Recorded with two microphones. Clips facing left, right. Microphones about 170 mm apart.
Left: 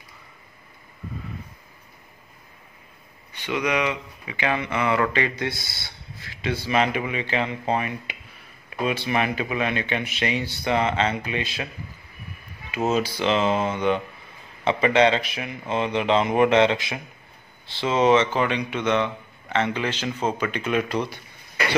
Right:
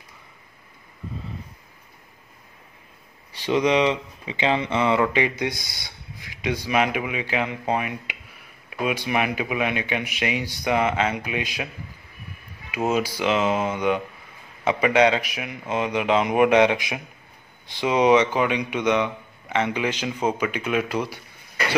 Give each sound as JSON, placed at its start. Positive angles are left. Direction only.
{"t": 3.4, "sound": "speech", "side_deg": -30}
{"t": 12.7, "sound": "speech", "side_deg": -10}